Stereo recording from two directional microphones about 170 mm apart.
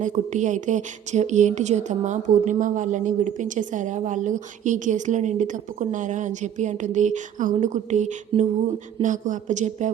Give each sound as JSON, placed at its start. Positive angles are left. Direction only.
{"t": 0.0, "sound": "speech", "side_deg": -45}